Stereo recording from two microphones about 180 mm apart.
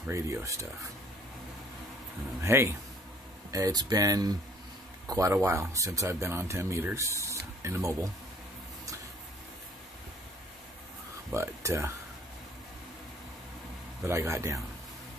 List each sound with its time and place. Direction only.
0.0 s speech: 15° right (ahead or behind)
2.4 s speech: 15° right (ahead or behind)
11.3 s speech: 15° right (ahead or behind)
14.0 s speech: 15° right (ahead or behind)